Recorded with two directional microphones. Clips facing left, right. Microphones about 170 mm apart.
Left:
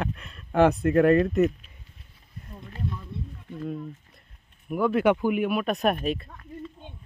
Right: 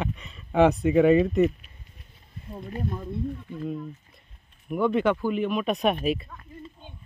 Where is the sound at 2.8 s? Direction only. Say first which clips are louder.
Right 2 dB; 45° right (ahead or behind).